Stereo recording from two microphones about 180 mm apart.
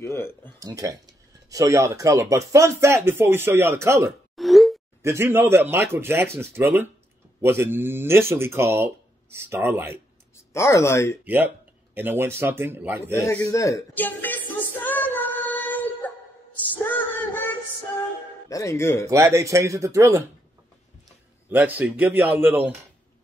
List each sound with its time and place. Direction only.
0.0 s a sound: 15° left (ahead or behind)
0.6 s speech: 20° right (ahead or behind)
4.4 s plop: centre (ahead or behind)
5.0 s speech: 15° right (ahead or behind)
10.3 s speech: 15° left (ahead or behind)
11.2 s speech: 10° right (ahead or behind)
13.1 s music: 15° left (ahead or behind)
16.7 s female singing: 10° left (ahead or behind)
18.5 s a man's voice: 15° left (ahead or behind)
19.0 s speech: 15° right (ahead or behind)
21.5 s speech: 10° right (ahead or behind)